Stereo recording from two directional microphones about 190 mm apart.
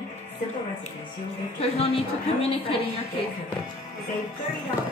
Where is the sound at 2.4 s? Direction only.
30° left (ahead or behind).